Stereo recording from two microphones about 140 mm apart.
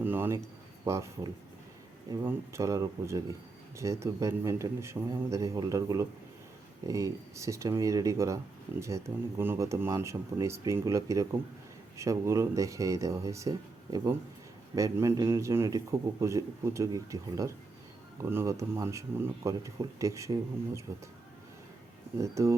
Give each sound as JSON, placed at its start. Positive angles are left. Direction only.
{"t": 0.0, "sound": "a man's voice", "side_deg": -15}
{"t": 22.2, "sound": "a man's voice", "side_deg": -20}